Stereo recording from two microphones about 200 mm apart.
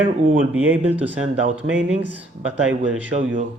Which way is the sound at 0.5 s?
10° right (ahead or behind).